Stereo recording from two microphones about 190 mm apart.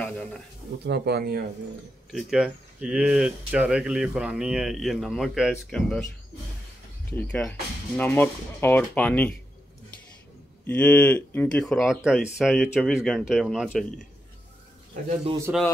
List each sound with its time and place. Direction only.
0.0 s a sound: 5° left (ahead or behind)
0.8 s speech: 60° right (ahead or behind)
2.1 s speech: 5° right (ahead or behind)
7.2 s speech: 5° left (ahead or behind)
10.7 s speech: 5° left (ahead or behind)